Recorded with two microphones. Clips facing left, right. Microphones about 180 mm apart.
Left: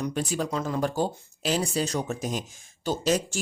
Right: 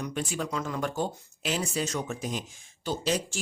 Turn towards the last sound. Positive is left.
turn(degrees=45)  # may be behind; listen again after turning